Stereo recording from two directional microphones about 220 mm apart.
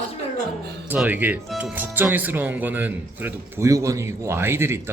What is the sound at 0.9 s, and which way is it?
Speech, 10° right (ahead or behind).